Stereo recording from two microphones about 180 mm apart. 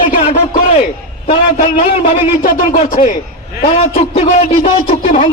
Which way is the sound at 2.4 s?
50° left (ahead or behind).